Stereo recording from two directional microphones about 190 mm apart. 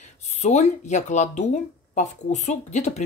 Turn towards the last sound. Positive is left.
turn(degrees=40)  # may be behind; listen again after turning